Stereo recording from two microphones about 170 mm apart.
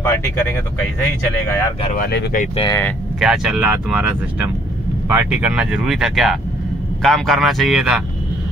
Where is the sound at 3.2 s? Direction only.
5° right (ahead or behind).